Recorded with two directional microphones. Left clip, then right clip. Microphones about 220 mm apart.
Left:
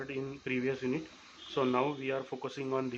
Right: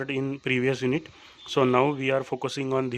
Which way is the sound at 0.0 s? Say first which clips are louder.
Right 9 dB; 55° right (ahead or behind).